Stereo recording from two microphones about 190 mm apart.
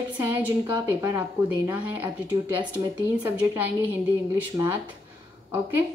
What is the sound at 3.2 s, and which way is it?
A woman's voice, 10° right (ahead or behind).